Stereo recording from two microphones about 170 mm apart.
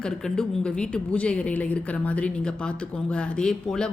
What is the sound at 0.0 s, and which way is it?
A woman's voice, 5° left (ahead or behind).